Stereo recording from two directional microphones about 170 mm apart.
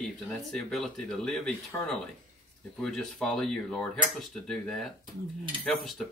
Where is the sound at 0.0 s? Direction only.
Centre (ahead or behind).